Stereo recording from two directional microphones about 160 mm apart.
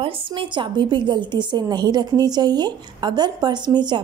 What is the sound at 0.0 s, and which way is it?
A woman's voice, 30° right (ahead or behind).